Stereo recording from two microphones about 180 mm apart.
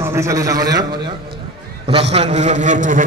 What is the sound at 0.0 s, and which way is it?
A man's voice, 15° right (ahead or behind).